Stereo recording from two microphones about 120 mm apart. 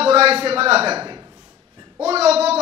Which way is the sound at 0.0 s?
55° right (ahead or behind).